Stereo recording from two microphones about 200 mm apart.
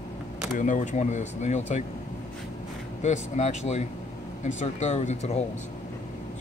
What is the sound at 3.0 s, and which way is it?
Speech, 35° left (ahead or behind).